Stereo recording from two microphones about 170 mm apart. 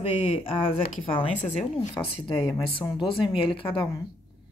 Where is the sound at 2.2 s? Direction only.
30° left (ahead or behind).